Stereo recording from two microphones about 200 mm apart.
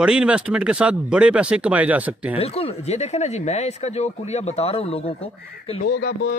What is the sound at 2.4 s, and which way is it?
Speech, 30° left (ahead or behind).